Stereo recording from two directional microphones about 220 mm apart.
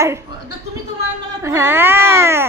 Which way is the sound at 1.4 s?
10° right (ahead or behind).